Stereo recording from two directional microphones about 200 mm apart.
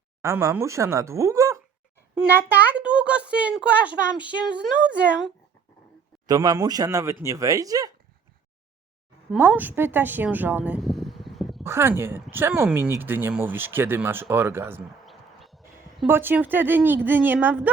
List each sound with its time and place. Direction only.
0.2 s a child's voice: 15° right (ahead or behind)
6.2 s a child's voice: 20° right (ahead or behind)
9.3 s speech: 10° right (ahead or behind)
11.6 s a child's voice: 10° right (ahead or behind)
15.0 s a sound: centre (ahead or behind)
16.0 s a child's voice: 10° right (ahead or behind)